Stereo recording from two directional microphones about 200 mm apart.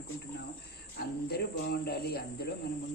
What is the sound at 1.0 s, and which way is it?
Speech, 55° left (ahead or behind).